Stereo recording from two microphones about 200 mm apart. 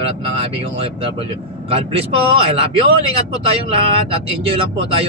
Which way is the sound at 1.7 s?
30° right (ahead or behind).